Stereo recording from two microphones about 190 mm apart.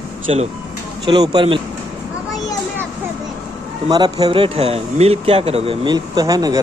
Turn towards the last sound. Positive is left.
turn(degrees=-20)  # may be behind; listen again after turning